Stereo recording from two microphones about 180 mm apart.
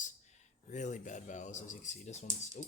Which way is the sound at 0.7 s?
45° left (ahead or behind).